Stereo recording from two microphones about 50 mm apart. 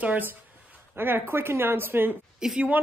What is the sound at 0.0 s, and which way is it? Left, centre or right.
Speech, right.